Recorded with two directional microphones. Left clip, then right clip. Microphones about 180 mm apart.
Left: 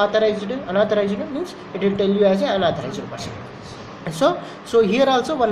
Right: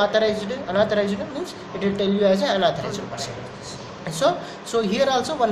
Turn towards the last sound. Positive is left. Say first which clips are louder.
# left 3 dB
turn(degrees=30)  # may be behind; listen again after turning